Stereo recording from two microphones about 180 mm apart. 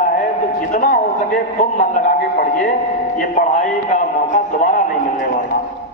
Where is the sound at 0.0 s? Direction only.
45° left (ahead or behind).